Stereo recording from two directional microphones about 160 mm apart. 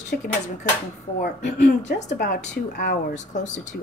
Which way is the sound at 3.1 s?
50° left (ahead or behind).